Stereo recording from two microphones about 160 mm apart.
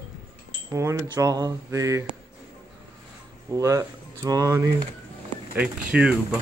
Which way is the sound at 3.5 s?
20° right (ahead or behind).